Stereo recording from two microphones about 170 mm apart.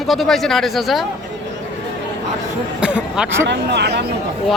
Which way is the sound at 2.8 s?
5° right (ahead or behind).